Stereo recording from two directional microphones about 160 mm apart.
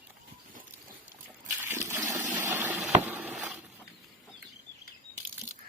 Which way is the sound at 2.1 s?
15° right (ahead or behind).